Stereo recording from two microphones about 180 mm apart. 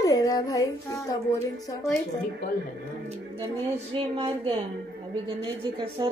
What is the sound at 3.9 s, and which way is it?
A woman's voice, 30° right (ahead or behind).